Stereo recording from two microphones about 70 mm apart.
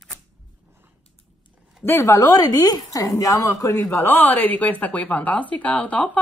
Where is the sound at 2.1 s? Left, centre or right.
Left.